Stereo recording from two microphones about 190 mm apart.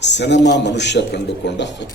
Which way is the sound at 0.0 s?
65° left (ahead or behind).